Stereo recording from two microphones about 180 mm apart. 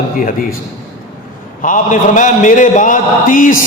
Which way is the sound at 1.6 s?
45° left (ahead or behind).